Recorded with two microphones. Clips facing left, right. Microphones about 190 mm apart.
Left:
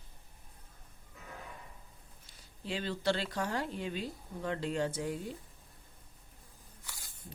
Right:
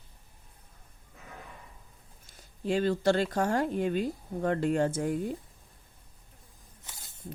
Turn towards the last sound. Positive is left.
turn(degrees=-25)  # may be behind; listen again after turning